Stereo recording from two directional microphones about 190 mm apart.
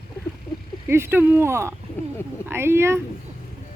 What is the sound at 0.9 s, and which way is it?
Speech, 10° right (ahead or behind).